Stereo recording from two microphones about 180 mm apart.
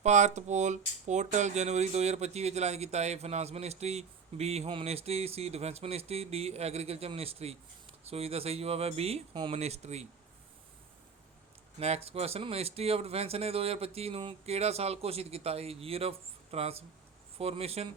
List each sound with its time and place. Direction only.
0.0 s speech: 40° right (ahead or behind)
11.8 s speech: 35° right (ahead or behind)